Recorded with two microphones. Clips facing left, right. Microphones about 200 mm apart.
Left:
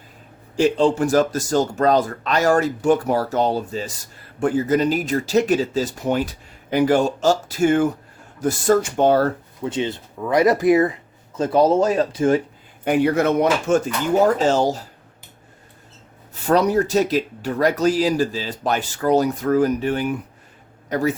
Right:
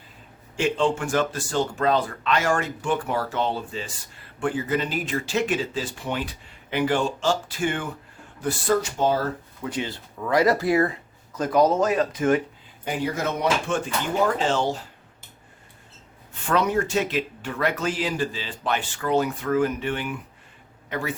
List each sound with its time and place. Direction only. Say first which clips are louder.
0.5 s speech: left 6 dB; 35° left (ahead or behind); by 9.3 s 60° left (ahead or behind)
9.6 s speech: left 6 dB; 20° left (ahead or behind)
12.8 s a man's voice: left 9 dB; 65° left (ahead or behind)
13.7 s speech: left 7 dB; 40° left (ahead or behind)
16.5 s speech: left 6 dB; 40° left (ahead or behind)